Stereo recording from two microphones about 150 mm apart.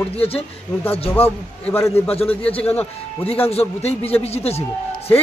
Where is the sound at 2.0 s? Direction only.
40° left (ahead or behind).